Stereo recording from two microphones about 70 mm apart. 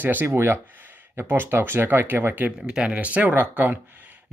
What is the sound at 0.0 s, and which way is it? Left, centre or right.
Speech, right.